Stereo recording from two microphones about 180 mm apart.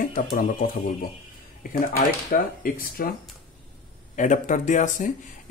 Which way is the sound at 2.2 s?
55° left (ahead or behind).